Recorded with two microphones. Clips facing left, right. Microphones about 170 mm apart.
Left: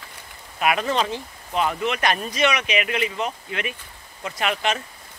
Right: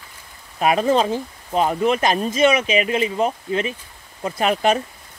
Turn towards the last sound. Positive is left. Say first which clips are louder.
# right 6 dB
turn(degrees=-35)  # may be behind; listen again after turning